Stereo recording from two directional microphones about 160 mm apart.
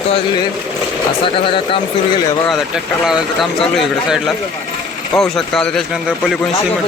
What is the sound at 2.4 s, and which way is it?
Speech, centre (ahead or behind).